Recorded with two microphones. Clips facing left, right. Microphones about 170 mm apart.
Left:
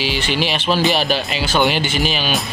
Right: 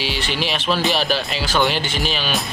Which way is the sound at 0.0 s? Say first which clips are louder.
Left 4 dB; centre (ahead or behind).